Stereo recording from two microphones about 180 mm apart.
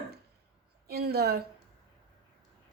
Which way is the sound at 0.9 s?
60° right (ahead or behind).